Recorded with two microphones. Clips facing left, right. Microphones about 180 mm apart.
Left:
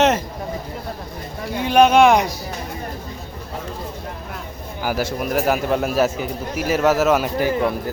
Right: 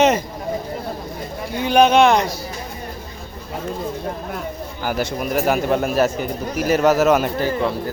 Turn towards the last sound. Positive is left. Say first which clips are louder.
# left 1 dB
turn(degrees=15)  # may be behind; listen again after turning